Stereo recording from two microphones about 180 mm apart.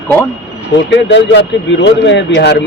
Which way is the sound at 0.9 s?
75° left (ahead or behind).